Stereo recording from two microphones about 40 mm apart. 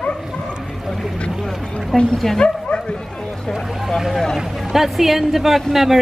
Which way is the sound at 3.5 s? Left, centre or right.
Centre.